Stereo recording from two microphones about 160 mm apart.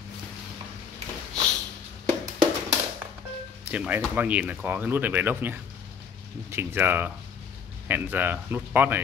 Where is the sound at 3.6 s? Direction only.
10° right (ahead or behind).